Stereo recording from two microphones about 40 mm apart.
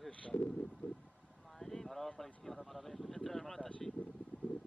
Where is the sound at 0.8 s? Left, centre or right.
Left.